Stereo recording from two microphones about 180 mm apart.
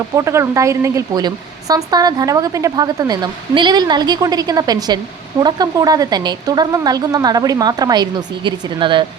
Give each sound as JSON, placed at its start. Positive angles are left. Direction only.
{"t": 0.2, "sound": "speech", "side_deg": -15}